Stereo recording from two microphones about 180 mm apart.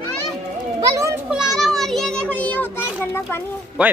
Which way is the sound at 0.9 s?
15° right (ahead or behind).